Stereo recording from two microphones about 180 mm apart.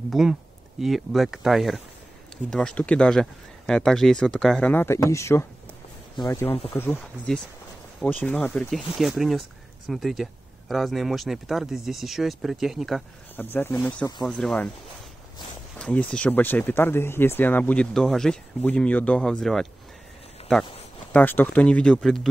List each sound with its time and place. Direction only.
0.1 s speech: centre (ahead or behind); by 7.0 s 15° left (ahead or behind)
8.0 s speech: 10° left (ahead or behind)
13.4 s speech: 10° left (ahead or behind)
15.8 s speech: 5° left (ahead or behind)
21.1 s speech: 10° left (ahead or behind)